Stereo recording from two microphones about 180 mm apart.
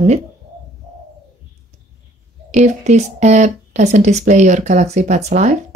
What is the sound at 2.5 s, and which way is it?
Speech, 40° right (ahead or behind).